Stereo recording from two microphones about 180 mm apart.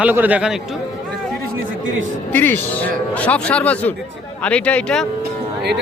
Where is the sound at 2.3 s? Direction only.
10° left (ahead or behind).